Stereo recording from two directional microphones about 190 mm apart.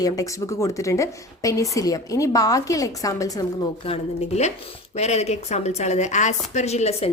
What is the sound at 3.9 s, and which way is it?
A woman's voice, 35° left (ahead or behind).